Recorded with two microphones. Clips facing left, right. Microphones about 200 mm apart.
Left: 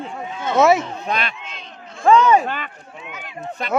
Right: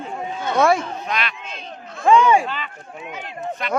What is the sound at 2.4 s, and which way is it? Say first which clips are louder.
Run: left 2 dB; 50° left (ahead or behind).